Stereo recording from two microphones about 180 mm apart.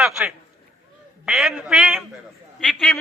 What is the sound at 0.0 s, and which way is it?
A man's voice, centre (ahead or behind).